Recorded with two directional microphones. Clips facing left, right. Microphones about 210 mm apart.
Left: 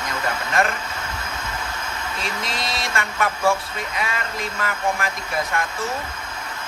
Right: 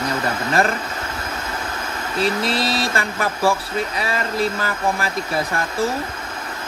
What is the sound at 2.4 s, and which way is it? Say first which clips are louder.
Speech: right 7 dB; 35° right (ahead or behind).